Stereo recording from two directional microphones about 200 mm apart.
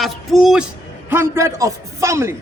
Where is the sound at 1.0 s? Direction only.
10° right (ahead or behind).